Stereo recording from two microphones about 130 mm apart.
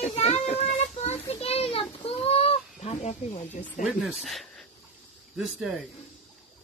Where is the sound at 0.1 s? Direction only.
55° left (ahead or behind).